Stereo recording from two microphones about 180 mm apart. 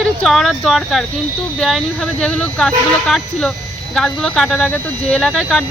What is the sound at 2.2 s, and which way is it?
Speech, 5° left (ahead or behind).